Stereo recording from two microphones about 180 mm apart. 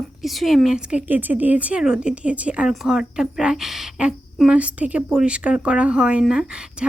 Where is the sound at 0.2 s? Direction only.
Centre (ahead or behind).